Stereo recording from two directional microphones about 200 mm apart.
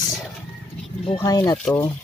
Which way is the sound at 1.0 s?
20° left (ahead or behind).